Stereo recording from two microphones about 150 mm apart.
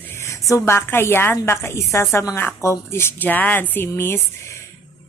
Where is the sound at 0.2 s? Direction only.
20° left (ahead or behind).